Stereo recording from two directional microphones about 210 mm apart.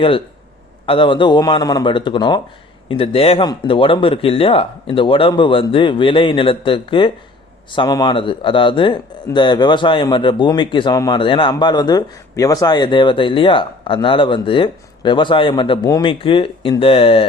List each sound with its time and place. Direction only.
0.9 s a man's voice: 25° left (ahead or behind)